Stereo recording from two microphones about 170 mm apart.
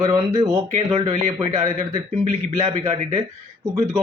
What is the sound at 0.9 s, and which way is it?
Speech, 30° right (ahead or behind).